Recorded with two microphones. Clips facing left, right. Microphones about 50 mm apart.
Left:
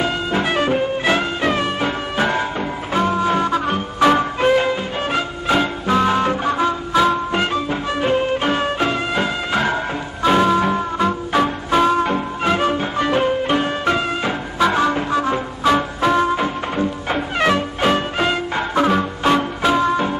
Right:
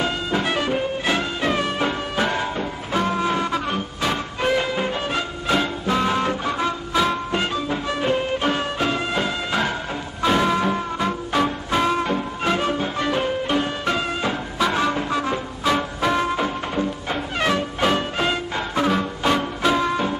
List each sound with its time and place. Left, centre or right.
0.0 s music: centre
7.8 s music: centre